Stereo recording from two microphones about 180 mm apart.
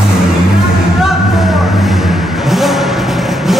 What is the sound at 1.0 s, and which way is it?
Vehicle, centre (ahead or behind).